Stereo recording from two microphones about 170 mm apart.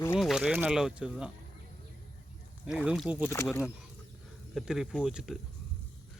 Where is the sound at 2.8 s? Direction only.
5° right (ahead or behind).